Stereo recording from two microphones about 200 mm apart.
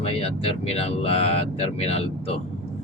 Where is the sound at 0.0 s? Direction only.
30° left (ahead or behind).